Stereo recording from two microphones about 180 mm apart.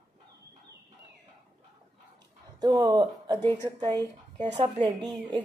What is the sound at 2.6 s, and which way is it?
A woman's voice, 20° right (ahead or behind).